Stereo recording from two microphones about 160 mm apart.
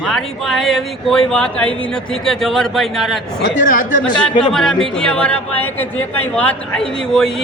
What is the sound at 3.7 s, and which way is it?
Speech, 60° left (ahead or behind).